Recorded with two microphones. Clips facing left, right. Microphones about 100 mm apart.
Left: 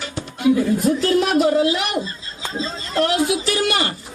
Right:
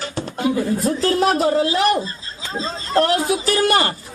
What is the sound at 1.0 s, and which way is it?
Speech, 35° right (ahead or behind).